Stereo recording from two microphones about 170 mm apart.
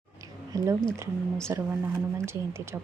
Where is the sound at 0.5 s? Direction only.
20° right (ahead or behind).